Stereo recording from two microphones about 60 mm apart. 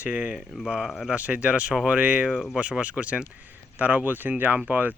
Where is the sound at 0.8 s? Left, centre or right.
Centre.